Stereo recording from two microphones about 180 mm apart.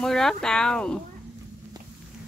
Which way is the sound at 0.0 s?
5° left (ahead or behind).